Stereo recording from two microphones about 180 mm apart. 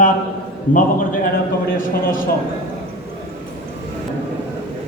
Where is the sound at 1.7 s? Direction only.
50° left (ahead or behind).